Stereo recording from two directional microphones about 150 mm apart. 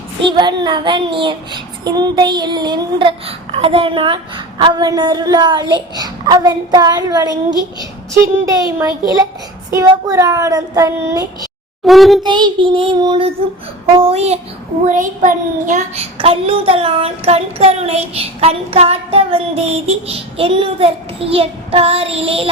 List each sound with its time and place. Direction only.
0.2 s a child's voice: 30° right (ahead or behind)
11.9 s a child's voice: centre (ahead or behind)
12.2 s child singing: 30° right (ahead or behind)
14.0 s speech: 45° right (ahead or behind)
14.8 s child singing: 55° right (ahead or behind)
16.1 s child singing: 40° right (ahead or behind)